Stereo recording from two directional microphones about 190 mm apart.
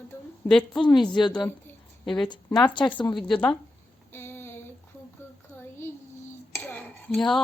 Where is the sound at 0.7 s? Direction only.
20° left (ahead or behind).